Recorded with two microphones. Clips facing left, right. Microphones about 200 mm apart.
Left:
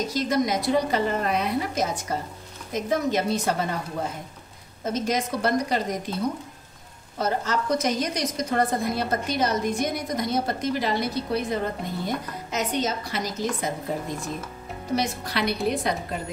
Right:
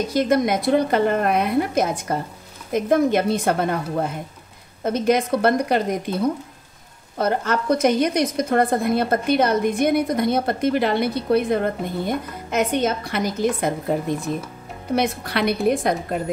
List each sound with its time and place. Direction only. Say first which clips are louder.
0.1 s a woman's voice: right 7 dB; 55° right (ahead or behind)
7.2 s a woman's voice: right 4 dB; 55° right (ahead or behind)